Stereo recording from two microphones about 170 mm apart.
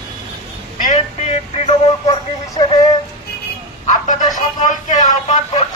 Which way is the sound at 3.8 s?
45° left (ahead or behind).